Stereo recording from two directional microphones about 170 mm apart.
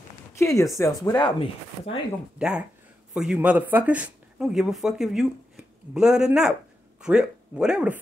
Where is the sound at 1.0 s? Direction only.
30° left (ahead or behind).